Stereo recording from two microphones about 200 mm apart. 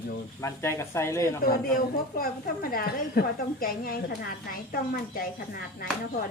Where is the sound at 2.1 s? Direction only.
45° left (ahead or behind).